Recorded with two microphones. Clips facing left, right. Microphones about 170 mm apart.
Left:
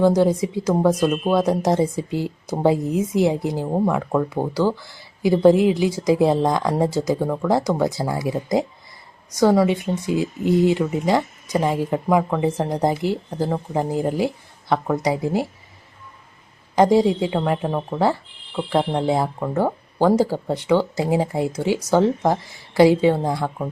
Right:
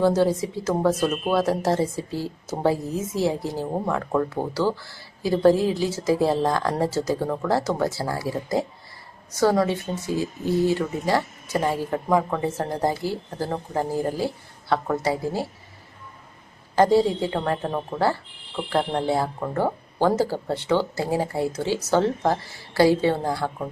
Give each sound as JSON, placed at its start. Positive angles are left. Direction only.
{"t": 0.0, "sound": "speech", "side_deg": 15}
{"t": 16.7, "sound": "speech", "side_deg": 15}